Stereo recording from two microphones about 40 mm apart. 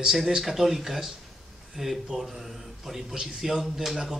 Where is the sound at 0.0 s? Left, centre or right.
Centre.